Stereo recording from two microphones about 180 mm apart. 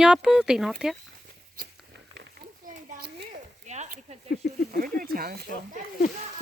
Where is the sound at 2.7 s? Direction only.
60° right (ahead or behind).